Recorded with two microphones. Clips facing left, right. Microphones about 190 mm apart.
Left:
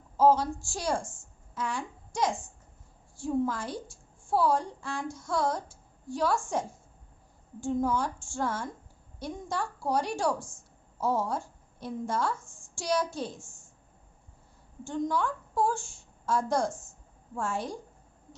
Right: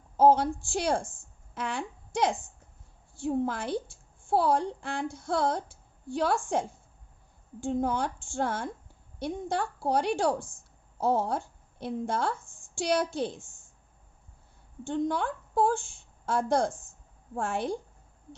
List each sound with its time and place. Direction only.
0.2 s a woman's voice: 60° right (ahead or behind)
3.4 s a woman's voice: 65° right (ahead or behind)
14.8 s a woman's voice: 60° right (ahead or behind)